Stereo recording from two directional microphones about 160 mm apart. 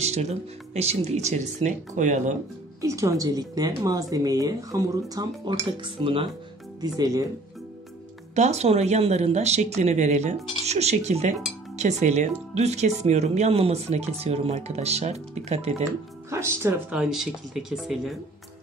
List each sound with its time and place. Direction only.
0.0 s speech: 45° right (ahead or behind)
2.8 s a woman's voice: 20° right (ahead or behind)
8.4 s speech: 45° right (ahead or behind)
16.3 s speech: 15° right (ahead or behind)
16.9 s speech: 5° right (ahead or behind)